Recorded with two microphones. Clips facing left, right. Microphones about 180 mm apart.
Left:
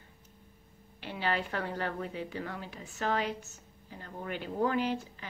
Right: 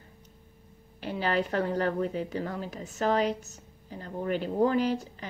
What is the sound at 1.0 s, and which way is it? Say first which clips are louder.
Speech: right 5 dB; 40° right (ahead or behind).